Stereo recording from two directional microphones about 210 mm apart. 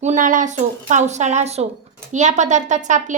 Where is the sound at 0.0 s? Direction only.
35° right (ahead or behind).